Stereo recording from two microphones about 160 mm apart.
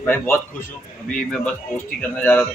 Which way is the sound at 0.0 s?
15° left (ahead or behind).